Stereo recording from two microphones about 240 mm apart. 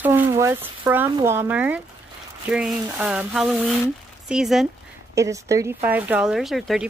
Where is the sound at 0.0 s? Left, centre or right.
Centre.